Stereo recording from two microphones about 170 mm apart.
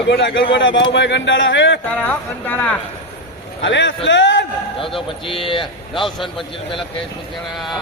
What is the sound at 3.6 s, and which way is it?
Speech, 90° left.